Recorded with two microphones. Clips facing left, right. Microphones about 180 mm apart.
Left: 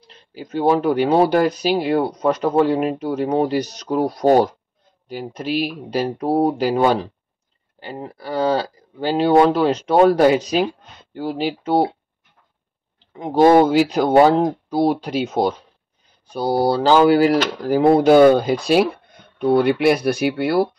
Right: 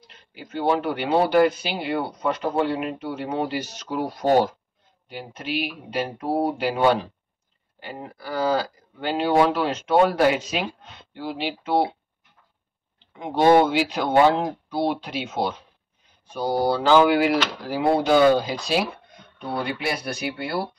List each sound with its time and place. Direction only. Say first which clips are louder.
0.0 s speech: left 7 dB; 35° left (ahead or behind)
13.2 s speech: left 4 dB; 40° left (ahead or behind); by 20.5 s 65° left (ahead or behind)